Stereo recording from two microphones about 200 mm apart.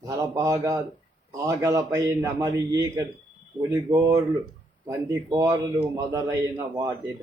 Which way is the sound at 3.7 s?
15° right (ahead or behind).